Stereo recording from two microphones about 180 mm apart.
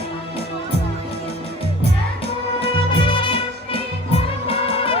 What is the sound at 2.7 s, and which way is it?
Music, 30° left (ahead or behind).